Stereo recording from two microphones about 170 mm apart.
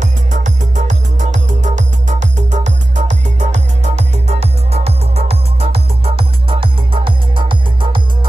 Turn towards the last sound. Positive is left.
turn(degrees=-30)  # may be behind; listen again after turning